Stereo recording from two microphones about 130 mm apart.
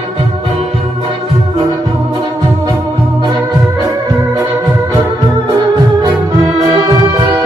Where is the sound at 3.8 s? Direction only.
25° right (ahead or behind).